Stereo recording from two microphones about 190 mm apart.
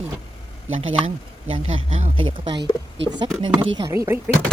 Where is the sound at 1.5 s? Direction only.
30° right (ahead or behind).